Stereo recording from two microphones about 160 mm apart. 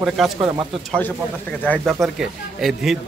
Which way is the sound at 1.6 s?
5° left (ahead or behind).